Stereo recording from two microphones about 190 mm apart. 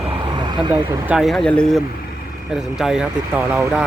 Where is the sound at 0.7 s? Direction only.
5° right (ahead or behind).